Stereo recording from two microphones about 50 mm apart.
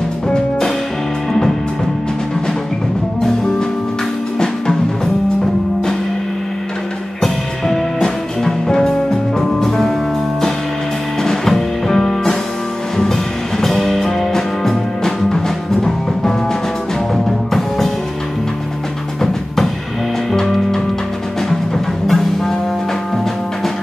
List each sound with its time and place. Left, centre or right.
0.3 s music: centre
7.2 s music: centre
11.2 s music: centre
20.3 s music: centre
22.0 s music: centre